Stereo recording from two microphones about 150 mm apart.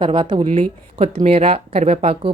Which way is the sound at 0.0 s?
35° right (ahead or behind).